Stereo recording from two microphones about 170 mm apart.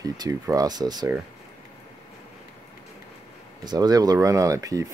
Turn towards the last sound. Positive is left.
turn(degrees=-20)  # may be behind; listen again after turning